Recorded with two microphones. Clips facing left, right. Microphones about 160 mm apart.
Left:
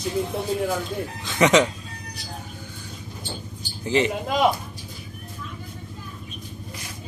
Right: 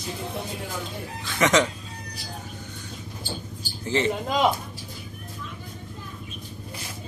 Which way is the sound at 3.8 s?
15° left (ahead or behind).